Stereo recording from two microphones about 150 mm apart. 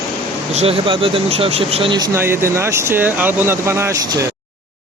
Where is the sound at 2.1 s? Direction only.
15° right (ahead or behind).